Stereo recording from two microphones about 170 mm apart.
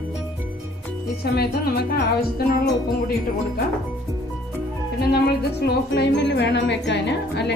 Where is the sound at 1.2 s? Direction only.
70° left (ahead or behind).